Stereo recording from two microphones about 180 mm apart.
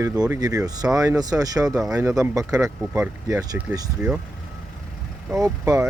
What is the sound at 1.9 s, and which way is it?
Speech, 15° right (ahead or behind).